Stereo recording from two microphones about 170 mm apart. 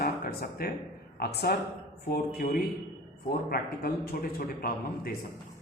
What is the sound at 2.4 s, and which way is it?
Speech, 40° left (ahead or behind).